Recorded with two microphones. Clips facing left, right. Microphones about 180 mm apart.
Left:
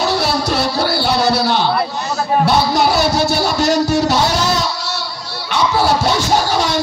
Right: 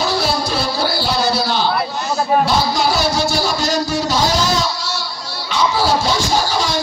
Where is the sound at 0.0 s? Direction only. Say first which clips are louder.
Left 2 dB; 65° left (ahead or behind).